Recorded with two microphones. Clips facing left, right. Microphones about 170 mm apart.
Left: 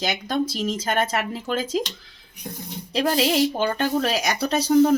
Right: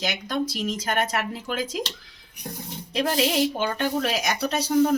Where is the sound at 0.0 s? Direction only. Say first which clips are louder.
Left 3 dB; 30° left (ahead or behind).